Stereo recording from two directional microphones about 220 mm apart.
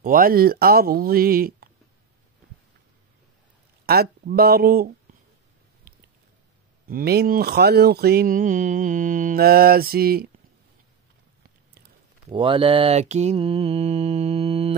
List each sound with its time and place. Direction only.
0.0 s speech: 40° right (ahead or behind)
3.8 s speech: 45° right (ahead or behind)
5.9 s a sound: 40° right (ahead or behind)
6.9 s speech: 45° right (ahead or behind)
12.3 s mantra: 25° right (ahead or behind)